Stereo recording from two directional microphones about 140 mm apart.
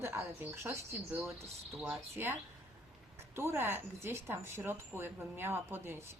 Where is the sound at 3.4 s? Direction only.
15° right (ahead or behind).